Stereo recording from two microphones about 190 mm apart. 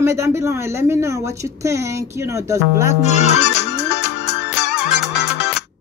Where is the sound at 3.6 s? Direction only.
65° left (ahead or behind).